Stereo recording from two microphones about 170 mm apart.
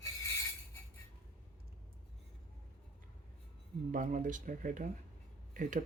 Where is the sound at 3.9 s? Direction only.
50° right (ahead or behind).